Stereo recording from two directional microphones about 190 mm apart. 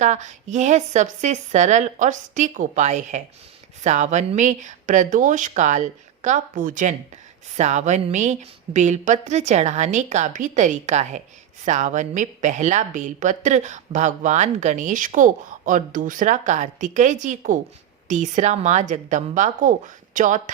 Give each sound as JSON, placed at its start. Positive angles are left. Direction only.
{"t": 0.0, "sound": "a woman's voice", "side_deg": -40}